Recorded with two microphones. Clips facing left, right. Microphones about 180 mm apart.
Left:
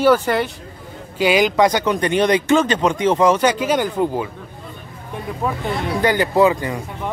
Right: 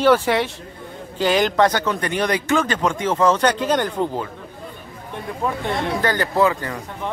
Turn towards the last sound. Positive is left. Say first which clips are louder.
# left 4 dB
turn(degrees=15)  # may be behind; listen again after turning